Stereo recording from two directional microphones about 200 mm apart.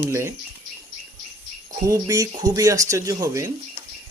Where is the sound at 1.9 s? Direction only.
15° right (ahead or behind).